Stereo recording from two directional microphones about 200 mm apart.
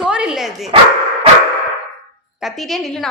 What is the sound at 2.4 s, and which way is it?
Speech, centre (ahead or behind).